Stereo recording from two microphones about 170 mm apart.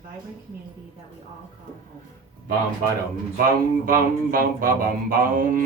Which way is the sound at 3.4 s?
55° right (ahead or behind).